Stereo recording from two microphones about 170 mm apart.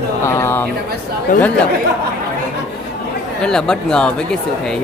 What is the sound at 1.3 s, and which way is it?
Speech, 50° left (ahead or behind).